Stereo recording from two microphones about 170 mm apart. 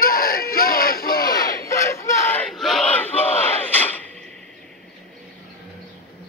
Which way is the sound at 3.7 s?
10° left (ahead or behind).